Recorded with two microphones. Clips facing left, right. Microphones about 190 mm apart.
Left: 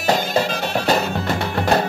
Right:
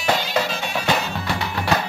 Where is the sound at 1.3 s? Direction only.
55° left (ahead or behind).